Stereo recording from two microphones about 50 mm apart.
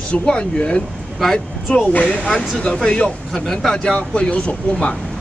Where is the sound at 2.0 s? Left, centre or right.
Centre.